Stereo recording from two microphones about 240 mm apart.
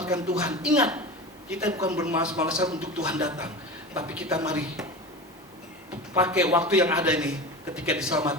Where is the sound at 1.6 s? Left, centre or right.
Centre.